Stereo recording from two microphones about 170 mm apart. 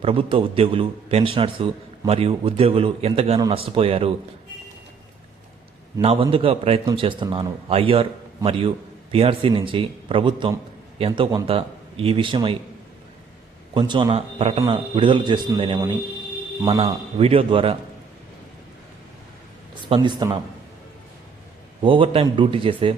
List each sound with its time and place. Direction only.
0.0 s a man's voice: 30° right (ahead or behind)
6.0 s a man's voice: 35° right (ahead or behind)
13.7 s a man's voice: 25° right (ahead or behind)
19.9 s a man's voice: 25° right (ahead or behind)
21.8 s a man's voice: 30° right (ahead or behind)